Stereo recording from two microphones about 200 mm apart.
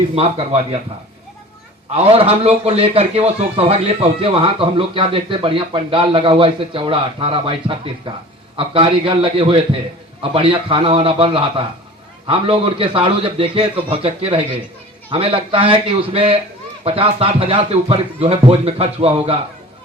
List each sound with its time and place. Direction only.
0.2 s a man's voice: 30° right (ahead or behind)
1.9 s a man's voice: 30° right (ahead or behind)